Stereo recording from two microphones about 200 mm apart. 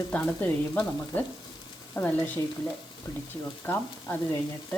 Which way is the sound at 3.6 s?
10° left (ahead or behind).